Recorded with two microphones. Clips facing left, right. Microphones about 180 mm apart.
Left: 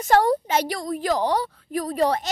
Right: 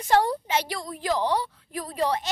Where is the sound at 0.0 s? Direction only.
45° left (ahead or behind).